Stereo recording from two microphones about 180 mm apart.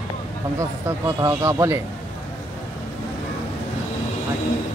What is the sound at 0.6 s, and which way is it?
Speech, 15° right (ahead or behind).